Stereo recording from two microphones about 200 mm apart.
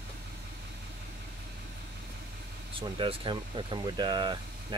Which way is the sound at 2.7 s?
25° right (ahead or behind).